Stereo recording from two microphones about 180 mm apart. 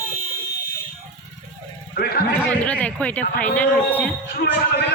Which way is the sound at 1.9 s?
60° left (ahead or behind).